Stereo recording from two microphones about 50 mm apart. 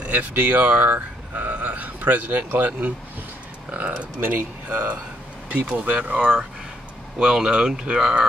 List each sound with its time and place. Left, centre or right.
0.0 s speech: right
0.9 s a sound: right
3.7 s speech: right
7.2 s speech: centre